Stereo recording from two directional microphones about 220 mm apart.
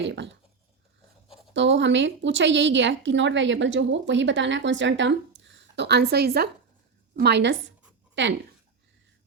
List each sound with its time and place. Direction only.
0.0 s speech: 55° right (ahead or behind)
1.5 s a woman's voice: 55° right (ahead or behind)